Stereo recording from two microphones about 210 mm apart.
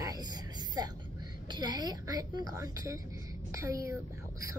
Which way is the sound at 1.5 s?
20° right (ahead or behind).